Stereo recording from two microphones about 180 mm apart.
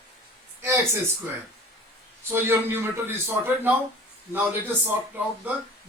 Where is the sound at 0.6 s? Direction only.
15° right (ahead or behind).